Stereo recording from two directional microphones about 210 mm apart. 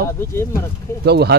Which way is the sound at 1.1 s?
50° right (ahead or behind).